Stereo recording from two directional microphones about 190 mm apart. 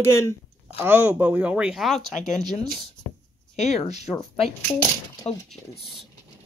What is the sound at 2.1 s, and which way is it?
Speech, 40° left (ahead or behind).